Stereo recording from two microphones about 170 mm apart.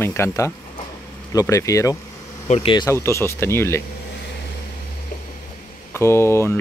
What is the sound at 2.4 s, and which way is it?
Speech, 35° left (ahead or behind).